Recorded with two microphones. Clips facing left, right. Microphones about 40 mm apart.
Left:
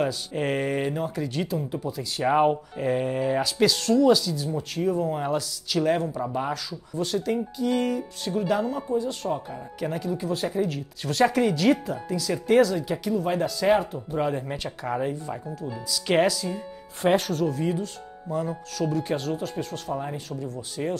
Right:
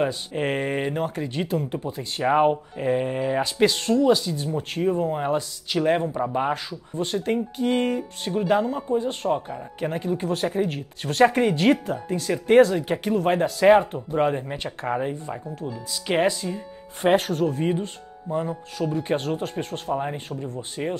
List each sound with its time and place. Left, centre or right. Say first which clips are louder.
0.0 s speech: right 2 dB; right
0.9 s speech: right 2 dB; right
1.2 s speech: right 1 dB; right
1.5 s speech: right 3 dB; right
1.8 s speech: even; right
2.2 s speech: right 2 dB; centre
2.8 s speech: right 1 dB; right
3.9 s speech: left 1 dB; right
4.2 s speech: right 1 dB; right
4.8 s speech: right 2 dB; right
16.4 s speech: right 1 dB; centre
17.0 s speech: right 2 dB; right
19.1 s speech: right 2 dB; right